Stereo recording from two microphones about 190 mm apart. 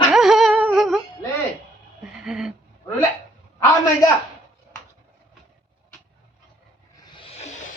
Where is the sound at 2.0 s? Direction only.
5° right (ahead or behind).